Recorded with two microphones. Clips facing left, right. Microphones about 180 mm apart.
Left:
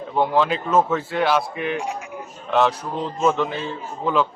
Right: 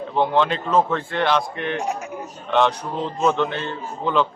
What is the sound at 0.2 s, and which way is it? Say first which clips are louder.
Speech: even; 5° left (ahead or behind).